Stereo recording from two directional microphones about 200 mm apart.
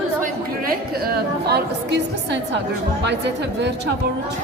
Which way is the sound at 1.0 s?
50° right (ahead or behind).